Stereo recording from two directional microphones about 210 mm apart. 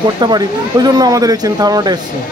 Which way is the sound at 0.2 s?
20° right (ahead or behind).